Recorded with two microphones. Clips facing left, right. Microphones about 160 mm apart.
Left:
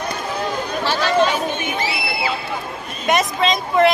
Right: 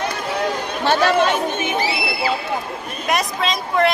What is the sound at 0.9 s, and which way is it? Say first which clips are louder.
Speech: right 2 dB; 55° right (ahead or behind).